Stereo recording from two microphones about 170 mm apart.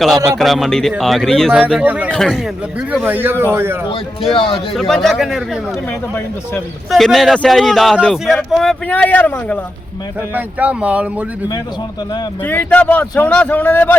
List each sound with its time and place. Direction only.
0.3 s a man's voice: centre (ahead or behind)
1.8 s a man's voice: 10° right (ahead or behind)
2.0 s a man's voice: 5° left (ahead or behind)
2.9 s a man's voice: 10° right (ahead or behind)
3.8 s speech: 35° left (ahead or behind)
4.7 s a man's voice: centre (ahead or behind)
6.9 s a man's voice: centre (ahead or behind)
10.3 s a man's voice: 10° right (ahead or behind)
12.5 s speech: 10° left (ahead or behind)